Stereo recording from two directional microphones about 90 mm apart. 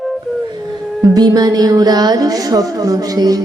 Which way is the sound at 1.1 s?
45° right (ahead or behind).